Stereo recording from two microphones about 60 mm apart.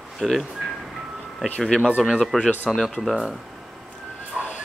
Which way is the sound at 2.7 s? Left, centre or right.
Centre.